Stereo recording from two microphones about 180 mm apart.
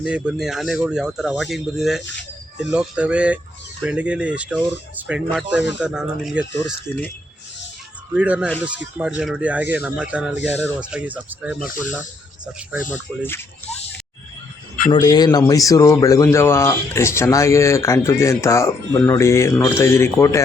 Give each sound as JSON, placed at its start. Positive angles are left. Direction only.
{"t": 0.0, "sound": "speech", "side_deg": -5}
{"t": 8.1, "sound": "speech", "side_deg": -5}
{"t": 12.9, "sound": "a man's voice", "side_deg": 10}
{"t": 14.9, "sound": "a man's voice", "side_deg": 25}